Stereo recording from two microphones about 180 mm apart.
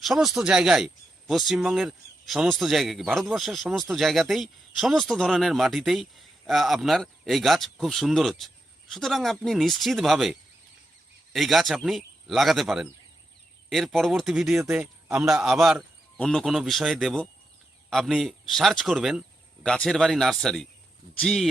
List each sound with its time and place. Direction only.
0.0 s speech: centre (ahead or behind)